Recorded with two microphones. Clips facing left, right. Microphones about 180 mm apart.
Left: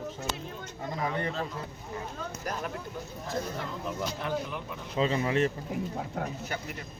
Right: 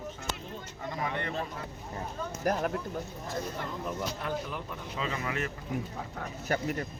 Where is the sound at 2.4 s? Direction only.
50° right (ahead or behind).